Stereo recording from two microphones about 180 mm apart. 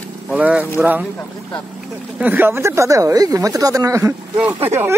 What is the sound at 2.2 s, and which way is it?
Speech, 10° right (ahead or behind).